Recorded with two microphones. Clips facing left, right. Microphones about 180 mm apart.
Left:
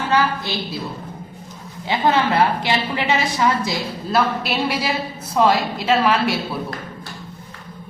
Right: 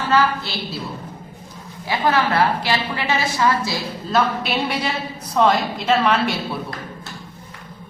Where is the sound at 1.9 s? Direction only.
20° left (ahead or behind).